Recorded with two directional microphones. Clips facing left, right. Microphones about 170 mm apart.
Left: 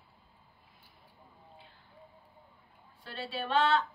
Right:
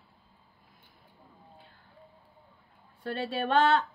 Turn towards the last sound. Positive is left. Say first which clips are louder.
# right 4 dB
turn(degrees=-50)  # may be behind; listen again after turning